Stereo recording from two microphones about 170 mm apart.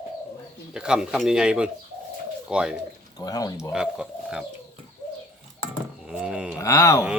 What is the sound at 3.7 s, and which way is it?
Speech, 5° right (ahead or behind).